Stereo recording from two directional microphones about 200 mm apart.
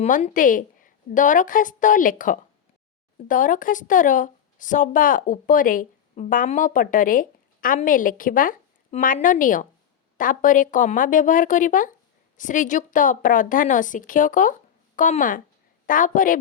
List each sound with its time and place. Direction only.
0.0 s speech: 35° left (ahead or behind)